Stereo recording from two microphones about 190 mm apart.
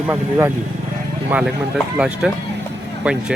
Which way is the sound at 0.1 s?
10° right (ahead or behind).